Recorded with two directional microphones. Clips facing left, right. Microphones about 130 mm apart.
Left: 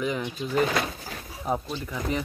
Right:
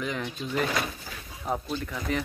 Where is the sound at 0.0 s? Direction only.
5° left (ahead or behind).